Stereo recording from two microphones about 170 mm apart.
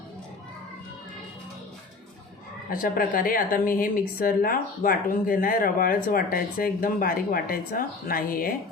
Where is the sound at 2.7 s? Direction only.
55° left (ahead or behind).